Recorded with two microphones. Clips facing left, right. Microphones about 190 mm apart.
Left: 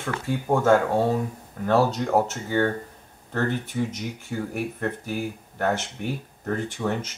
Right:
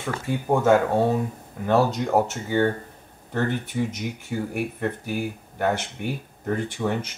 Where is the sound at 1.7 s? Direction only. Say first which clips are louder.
Even; 20° right (ahead or behind).